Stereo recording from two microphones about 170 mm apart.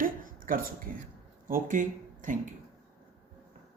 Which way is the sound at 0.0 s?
55° right (ahead or behind).